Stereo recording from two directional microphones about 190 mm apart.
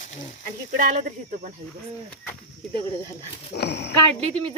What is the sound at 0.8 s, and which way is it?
Speech, 40° right (ahead or behind).